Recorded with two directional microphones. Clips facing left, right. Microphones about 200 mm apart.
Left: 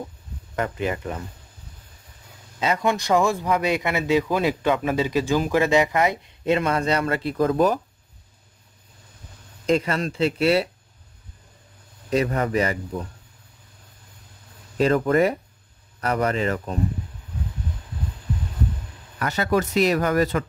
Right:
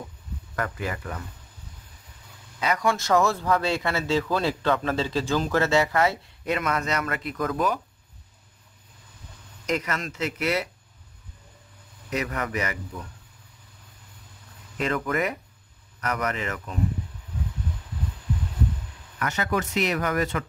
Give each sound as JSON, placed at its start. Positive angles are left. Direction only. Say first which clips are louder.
{"t": 0.6, "sound": "speech", "louder": "left 5 dB", "side_deg": 25}
{"t": 2.6, "sound": "speech", "louder": "left 2 dB", "side_deg": 25}
{"t": 9.7, "sound": "speech", "louder": "left 6 dB", "side_deg": 30}
{"t": 12.1, "sound": "speech", "louder": "left 7 dB", "side_deg": 30}
{"t": 14.8, "sound": "speech", "louder": "left 8 dB", "side_deg": 35}
{"t": 19.1, "sound": "speech", "louder": "left 5 dB", "side_deg": 35}